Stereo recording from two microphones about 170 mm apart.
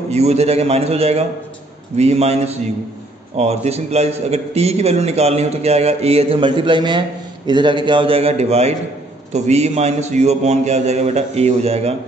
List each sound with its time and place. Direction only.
0.1 s a man's voice: 40° right (ahead or behind)